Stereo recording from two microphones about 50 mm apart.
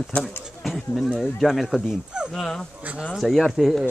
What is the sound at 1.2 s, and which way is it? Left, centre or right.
Speech, centre.